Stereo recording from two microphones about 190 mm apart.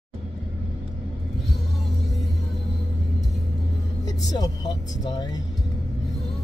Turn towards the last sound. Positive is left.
turn(degrees=20)  # may be behind; listen again after turning